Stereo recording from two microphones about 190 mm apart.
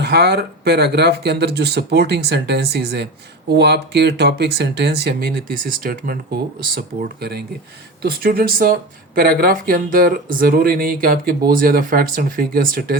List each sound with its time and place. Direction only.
0.0 s speech: 60° right (ahead or behind)